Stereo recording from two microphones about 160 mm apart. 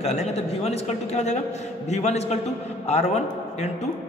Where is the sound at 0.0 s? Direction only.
45° left (ahead or behind).